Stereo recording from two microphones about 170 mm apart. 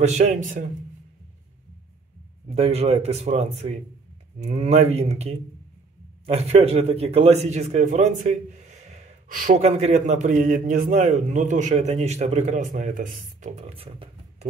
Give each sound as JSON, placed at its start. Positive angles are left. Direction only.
{"t": 0.0, "sound": "a man's voice", "side_deg": -40}
{"t": 2.4, "sound": "a man's voice", "side_deg": -35}